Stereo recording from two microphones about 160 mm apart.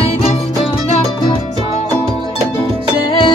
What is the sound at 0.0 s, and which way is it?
Music, 40° left (ahead or behind).